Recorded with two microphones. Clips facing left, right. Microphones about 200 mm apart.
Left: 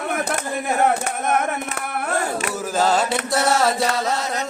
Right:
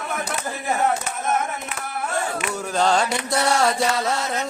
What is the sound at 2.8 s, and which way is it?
Music, 5° left (ahead or behind).